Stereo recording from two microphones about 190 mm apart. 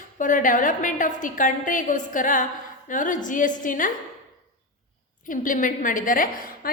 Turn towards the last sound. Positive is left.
turn(degrees=45)  # may be behind; listen again after turning